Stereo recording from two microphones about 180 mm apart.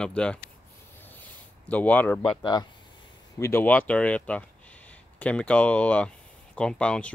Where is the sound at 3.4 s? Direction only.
15° left (ahead or behind).